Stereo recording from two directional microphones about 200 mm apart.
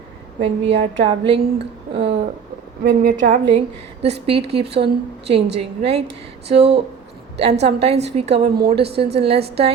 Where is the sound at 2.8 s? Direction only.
50° right (ahead or behind).